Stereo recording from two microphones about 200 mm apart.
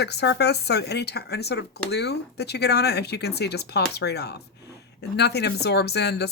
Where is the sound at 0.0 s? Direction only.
55° left (ahead or behind).